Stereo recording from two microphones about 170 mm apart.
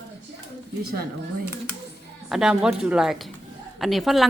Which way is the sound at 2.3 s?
5° right (ahead or behind).